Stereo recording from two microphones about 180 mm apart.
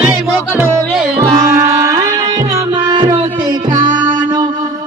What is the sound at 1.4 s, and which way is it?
Music, 15° right (ahead or behind).